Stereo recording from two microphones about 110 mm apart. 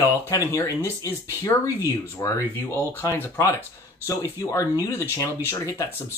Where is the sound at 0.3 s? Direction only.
30° left (ahead or behind).